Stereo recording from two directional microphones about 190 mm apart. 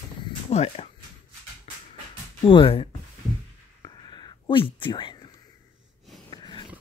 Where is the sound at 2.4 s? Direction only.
25° left (ahead or behind).